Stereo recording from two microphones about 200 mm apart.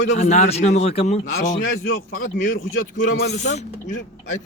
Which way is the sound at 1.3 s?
50° left (ahead or behind).